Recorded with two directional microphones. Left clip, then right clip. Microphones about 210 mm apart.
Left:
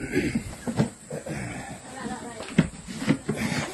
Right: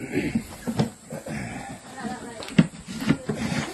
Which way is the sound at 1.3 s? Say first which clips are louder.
Right 1 dB; 15° left (ahead or behind).